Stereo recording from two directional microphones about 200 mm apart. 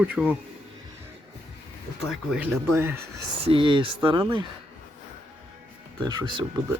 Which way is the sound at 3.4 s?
25° right (ahead or behind).